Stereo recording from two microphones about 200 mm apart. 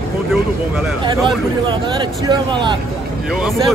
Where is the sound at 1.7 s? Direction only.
25° right (ahead or behind).